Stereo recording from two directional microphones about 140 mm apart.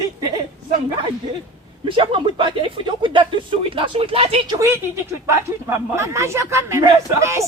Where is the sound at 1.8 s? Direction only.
40° right (ahead or behind).